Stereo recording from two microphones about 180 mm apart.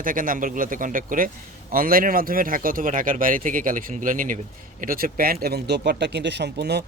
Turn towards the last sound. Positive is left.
turn(degrees=-65)  # may be behind; listen again after turning